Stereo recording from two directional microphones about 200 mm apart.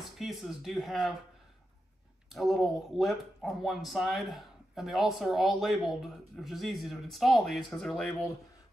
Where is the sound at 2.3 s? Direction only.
Centre (ahead or behind).